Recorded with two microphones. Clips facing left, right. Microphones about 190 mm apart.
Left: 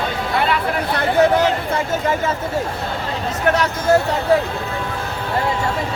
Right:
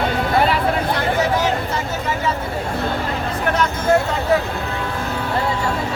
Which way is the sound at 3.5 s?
40° left (ahead or behind).